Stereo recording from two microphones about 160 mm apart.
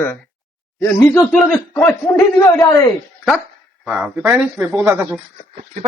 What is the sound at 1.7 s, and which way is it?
A man's voice, 15° left (ahead or behind).